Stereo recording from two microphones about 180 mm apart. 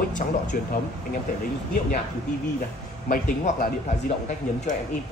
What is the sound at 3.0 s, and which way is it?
Speech, 50° left (ahead or behind).